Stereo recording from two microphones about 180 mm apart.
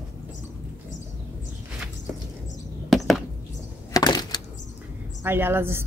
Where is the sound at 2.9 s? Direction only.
Centre (ahead or behind).